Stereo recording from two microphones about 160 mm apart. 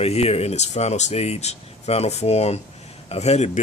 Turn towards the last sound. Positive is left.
turn(degrees=45)  # may be behind; listen again after turning